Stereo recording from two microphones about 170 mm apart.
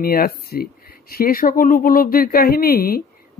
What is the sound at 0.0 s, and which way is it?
Speech, 60° left (ahead or behind).